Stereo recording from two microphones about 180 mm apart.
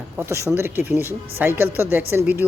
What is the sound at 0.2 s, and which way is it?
Speech, 15° right (ahead or behind).